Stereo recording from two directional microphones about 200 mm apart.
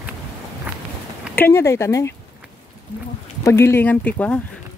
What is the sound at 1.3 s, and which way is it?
Speech, 10° left (ahead or behind).